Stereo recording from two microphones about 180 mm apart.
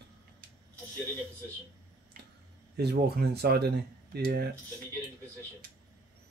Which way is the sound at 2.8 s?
65° right (ahead or behind).